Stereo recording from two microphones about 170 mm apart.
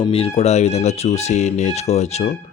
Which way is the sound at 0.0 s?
35° left (ahead or behind).